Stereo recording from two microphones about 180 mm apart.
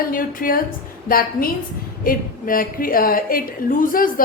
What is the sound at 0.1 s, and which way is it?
A woman's voice, 50° left (ahead or behind).